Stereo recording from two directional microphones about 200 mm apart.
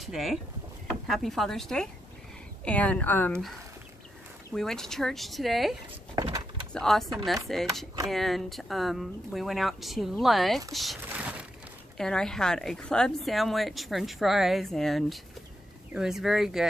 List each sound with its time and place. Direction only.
0.0 s a woman's voice: centre (ahead or behind)
4.6 s a woman's voice: centre (ahead or behind)
6.1 s a sound: 20° right (ahead or behind)
6.7 s a woman's voice: centre (ahead or behind)
10.7 s a sound: centre (ahead or behind)
12.0 s a woman's voice: 5° left (ahead or behind)